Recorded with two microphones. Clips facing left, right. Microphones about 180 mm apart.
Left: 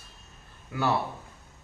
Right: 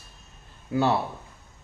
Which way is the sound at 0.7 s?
30° right (ahead or behind).